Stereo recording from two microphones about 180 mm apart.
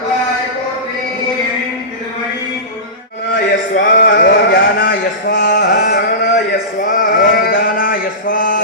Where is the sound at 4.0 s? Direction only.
65° left (ahead or behind).